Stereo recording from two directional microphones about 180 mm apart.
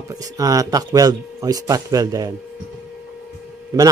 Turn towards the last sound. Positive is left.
turn(degrees=-20)  # may be behind; listen again after turning